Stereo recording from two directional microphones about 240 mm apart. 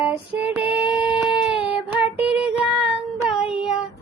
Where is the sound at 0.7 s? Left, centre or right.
Centre.